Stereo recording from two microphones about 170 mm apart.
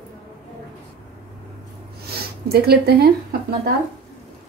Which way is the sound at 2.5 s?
65° right (ahead or behind).